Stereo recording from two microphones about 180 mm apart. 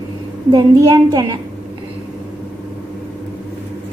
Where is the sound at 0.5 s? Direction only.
25° right (ahead or behind).